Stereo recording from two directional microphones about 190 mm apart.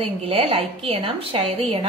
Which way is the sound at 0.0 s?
30° right (ahead or behind).